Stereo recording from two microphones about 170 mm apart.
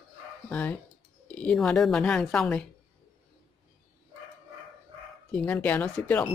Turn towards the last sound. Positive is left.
turn(degrees=10)  # may be behind; listen again after turning